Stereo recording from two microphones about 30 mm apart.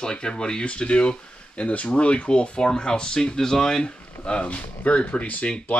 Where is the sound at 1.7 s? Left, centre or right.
Left.